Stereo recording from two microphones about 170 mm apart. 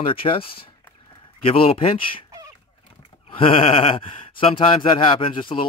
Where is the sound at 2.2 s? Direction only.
20° right (ahead or behind).